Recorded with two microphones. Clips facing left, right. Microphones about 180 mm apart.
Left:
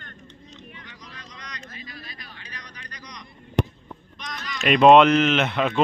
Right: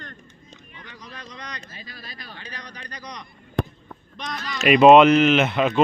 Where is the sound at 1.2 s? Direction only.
30° right (ahead or behind).